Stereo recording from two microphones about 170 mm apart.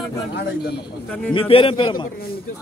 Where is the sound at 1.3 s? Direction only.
30° left (ahead or behind).